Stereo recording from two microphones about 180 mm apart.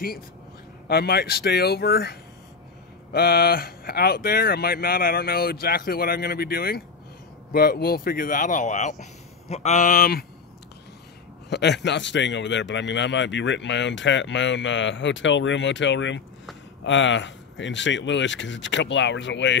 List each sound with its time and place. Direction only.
0.8 s speech: 60° left (ahead or behind)
11.5 s a man's voice: 70° left (ahead or behind); by 19.6 s 90° left